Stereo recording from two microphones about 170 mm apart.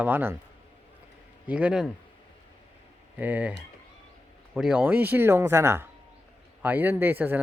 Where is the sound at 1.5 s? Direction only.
5° right (ahead or behind).